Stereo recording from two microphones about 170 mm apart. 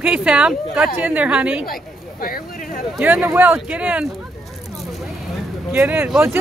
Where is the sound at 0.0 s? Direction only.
5° right (ahead or behind).